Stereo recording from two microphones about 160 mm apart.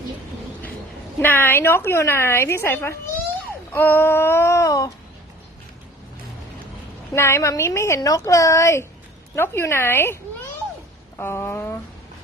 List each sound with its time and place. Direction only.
1.2 s a woman's voice: 15° left (ahead or behind)
7.1 s a woman's voice: 15° left (ahead or behind)